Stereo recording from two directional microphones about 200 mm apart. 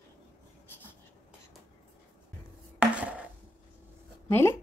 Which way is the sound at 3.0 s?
5° right (ahead or behind).